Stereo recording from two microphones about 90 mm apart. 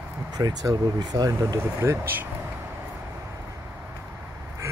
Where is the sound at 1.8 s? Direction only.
25° right (ahead or behind).